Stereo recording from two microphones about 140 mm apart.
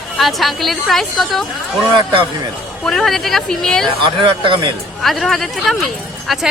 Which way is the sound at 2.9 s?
5° left (ahead or behind).